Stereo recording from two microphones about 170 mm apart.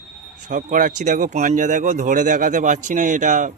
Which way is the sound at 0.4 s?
50° right (ahead or behind).